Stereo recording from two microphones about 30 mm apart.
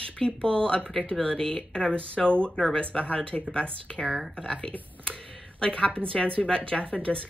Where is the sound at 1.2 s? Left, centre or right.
Left.